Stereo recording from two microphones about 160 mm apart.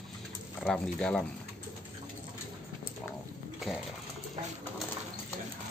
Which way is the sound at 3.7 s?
Centre (ahead or behind).